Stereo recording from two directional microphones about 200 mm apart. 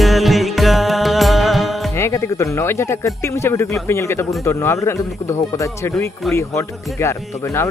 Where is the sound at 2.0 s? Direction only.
15° left (ahead or behind).